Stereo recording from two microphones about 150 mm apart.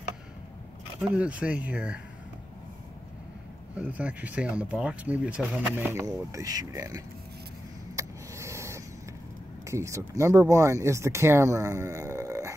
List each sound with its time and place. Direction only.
1.0 s speech: 10° right (ahead or behind)
3.7 s speech: 10° right (ahead or behind)
7.9 s a sound: 20° right (ahead or behind)
9.7 s speech: 20° right (ahead or behind)